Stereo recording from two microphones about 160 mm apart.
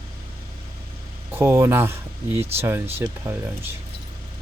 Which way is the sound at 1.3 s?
15° right (ahead or behind).